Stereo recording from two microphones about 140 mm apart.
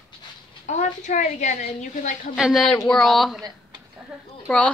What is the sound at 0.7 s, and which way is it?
A woman's voice, 60° left (ahead or behind).